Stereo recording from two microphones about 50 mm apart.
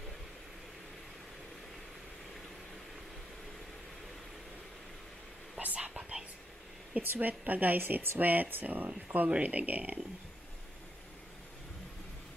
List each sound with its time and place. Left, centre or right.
5.6 s whispering: right
7.0 s a woman's voice: right